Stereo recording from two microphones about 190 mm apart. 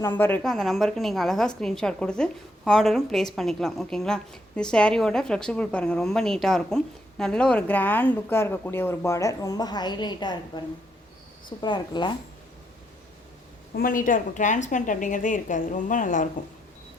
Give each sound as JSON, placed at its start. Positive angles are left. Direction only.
{"t": 0.0, "sound": "a woman's voice", "side_deg": 10}
{"t": 13.7, "sound": "a woman's voice", "side_deg": 45}